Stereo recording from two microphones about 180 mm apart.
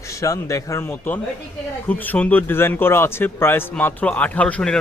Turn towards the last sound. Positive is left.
turn(degrees=5)  # may be behind; listen again after turning